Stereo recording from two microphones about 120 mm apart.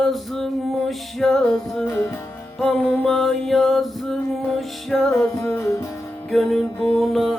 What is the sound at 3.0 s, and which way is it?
Music, centre (ahead or behind).